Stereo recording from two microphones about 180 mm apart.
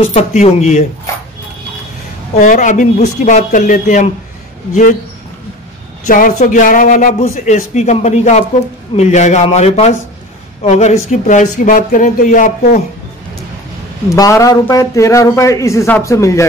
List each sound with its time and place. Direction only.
0.1 s a man's voice: 40° left (ahead or behind)
2.3 s a man's voice: 45° left (ahead or behind)
6.0 s a man's voice: 45° left (ahead or behind)
14.0 s a man's voice: 20° left (ahead or behind)